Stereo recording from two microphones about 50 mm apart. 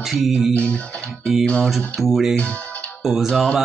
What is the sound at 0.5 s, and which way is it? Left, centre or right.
Music, left.